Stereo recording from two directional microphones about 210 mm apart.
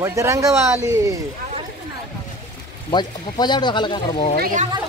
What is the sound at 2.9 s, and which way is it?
Speech, 20° left (ahead or behind).